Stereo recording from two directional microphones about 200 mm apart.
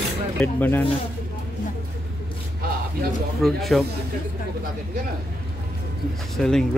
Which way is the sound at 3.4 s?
Centre (ahead or behind).